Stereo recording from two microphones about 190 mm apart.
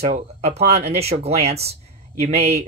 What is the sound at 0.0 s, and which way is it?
Speech, 35° right (ahead or behind).